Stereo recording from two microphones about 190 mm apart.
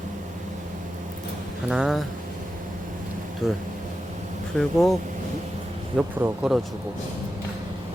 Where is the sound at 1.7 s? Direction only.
Centre (ahead or behind).